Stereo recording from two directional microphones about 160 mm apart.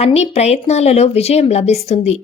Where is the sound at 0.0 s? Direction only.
40° left (ahead or behind).